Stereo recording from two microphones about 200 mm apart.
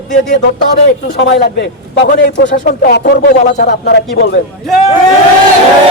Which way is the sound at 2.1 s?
55° left (ahead or behind).